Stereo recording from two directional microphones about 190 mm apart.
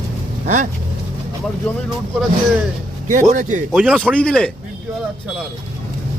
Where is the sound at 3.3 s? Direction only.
40° right (ahead or behind).